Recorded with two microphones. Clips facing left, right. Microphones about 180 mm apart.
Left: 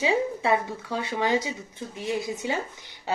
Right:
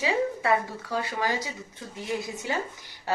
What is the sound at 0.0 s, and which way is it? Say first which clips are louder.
A woman's voice: left 2 dB; 25° left (ahead or behind).